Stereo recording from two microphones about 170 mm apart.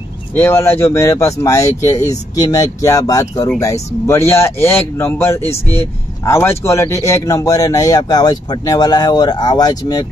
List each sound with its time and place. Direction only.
0.3 s speech: 15° left (ahead or behind)